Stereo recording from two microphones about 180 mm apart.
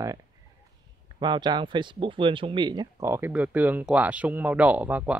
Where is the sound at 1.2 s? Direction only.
25° right (ahead or behind).